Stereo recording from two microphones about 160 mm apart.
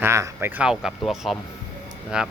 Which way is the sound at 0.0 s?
15° right (ahead or behind).